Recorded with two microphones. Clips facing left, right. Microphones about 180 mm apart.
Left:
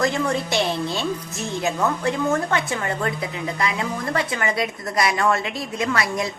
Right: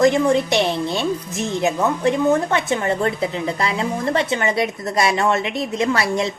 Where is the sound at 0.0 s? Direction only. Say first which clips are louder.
Right 7 dB; 20° right (ahead or behind).